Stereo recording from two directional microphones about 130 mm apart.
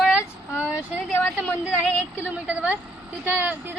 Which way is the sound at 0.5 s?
10° right (ahead or behind).